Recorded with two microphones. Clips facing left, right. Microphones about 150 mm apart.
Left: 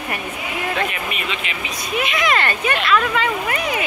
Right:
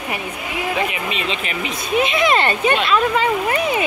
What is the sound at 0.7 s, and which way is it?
Speech, 15° right (ahead or behind).